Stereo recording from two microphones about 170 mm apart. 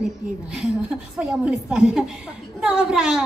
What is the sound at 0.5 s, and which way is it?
Speech, 5° right (ahead or behind).